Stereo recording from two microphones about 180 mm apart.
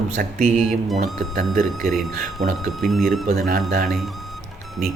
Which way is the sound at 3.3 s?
50° right (ahead or behind).